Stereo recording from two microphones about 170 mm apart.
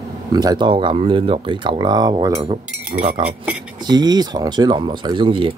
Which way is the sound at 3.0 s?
45° right (ahead or behind).